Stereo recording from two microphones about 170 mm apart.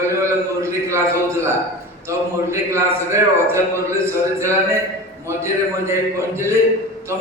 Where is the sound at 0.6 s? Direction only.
15° right (ahead or behind).